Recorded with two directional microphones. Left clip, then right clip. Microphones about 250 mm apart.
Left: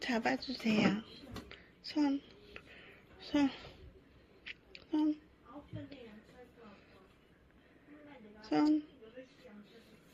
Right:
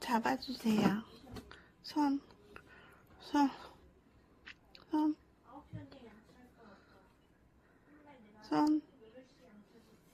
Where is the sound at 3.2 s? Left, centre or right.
Centre.